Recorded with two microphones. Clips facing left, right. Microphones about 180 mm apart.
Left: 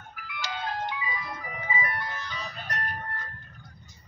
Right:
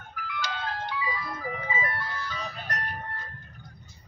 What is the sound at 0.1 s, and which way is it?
Ice cream truck, 15° left (ahead or behind).